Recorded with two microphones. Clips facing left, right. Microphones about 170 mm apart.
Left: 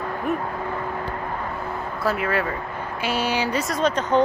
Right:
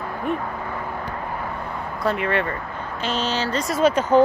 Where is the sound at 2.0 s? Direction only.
5° left (ahead or behind).